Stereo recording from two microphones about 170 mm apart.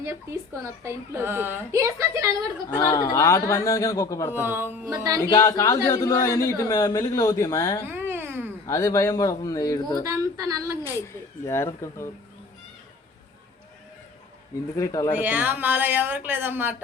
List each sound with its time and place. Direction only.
0.0 s a woman's voice: 15° right (ahead or behind)
2.8 s a man's voice: 20° left (ahead or behind)
4.4 s a woman's voice: 10° right (ahead or behind)
5.3 s a man's voice: 20° left (ahead or behind)
7.9 s a sound: 15° right (ahead or behind)
8.6 s a man's voice: 20° left (ahead or behind)
10.0 s a woman's voice: 20° right (ahead or behind)
11.1 s speech: 15° left (ahead or behind)
14.8 s a man's voice: 20° left (ahead or behind)
15.2 s a woman's voice: 10° right (ahead or behind)